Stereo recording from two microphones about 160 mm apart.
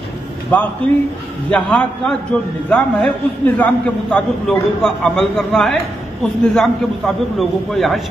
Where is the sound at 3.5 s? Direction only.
5° left (ahead or behind).